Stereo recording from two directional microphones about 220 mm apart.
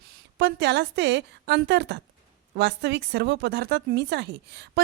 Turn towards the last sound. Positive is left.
turn(degrees=-50)  # may be behind; listen again after turning